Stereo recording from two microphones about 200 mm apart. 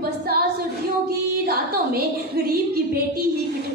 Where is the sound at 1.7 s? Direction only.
50° right (ahead or behind).